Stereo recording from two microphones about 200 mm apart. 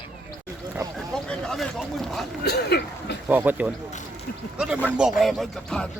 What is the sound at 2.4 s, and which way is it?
Speech, 55° left (ahead or behind).